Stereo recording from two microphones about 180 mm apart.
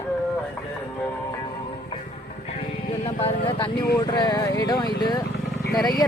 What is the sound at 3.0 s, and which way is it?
Speech, 30° left (ahead or behind).